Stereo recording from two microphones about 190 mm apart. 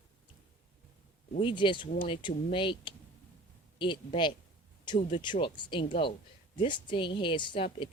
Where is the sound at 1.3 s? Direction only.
25° left (ahead or behind).